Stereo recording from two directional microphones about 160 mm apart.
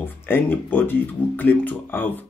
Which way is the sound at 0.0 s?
15° left (ahead or behind).